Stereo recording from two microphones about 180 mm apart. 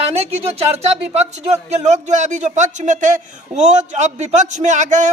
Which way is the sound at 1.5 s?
40° right (ahead or behind).